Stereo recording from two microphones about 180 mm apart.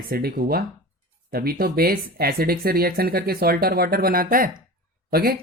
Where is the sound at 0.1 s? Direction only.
55° right (ahead or behind).